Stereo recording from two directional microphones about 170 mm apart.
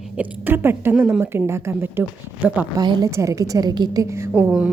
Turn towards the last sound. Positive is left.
turn(degrees=-5)  # may be behind; listen again after turning